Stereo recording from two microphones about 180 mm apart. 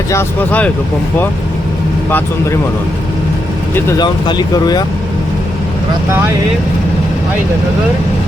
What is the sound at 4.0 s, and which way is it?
Speech, 25° left (ahead or behind).